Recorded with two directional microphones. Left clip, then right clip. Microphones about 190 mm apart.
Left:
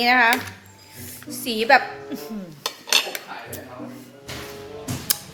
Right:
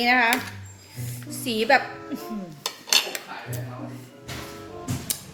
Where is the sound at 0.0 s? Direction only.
10° right (ahead or behind).